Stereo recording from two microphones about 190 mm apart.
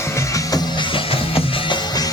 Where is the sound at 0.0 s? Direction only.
15° left (ahead or behind).